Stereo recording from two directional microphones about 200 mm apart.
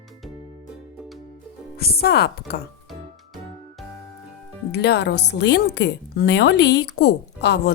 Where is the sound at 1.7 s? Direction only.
50° left (ahead or behind).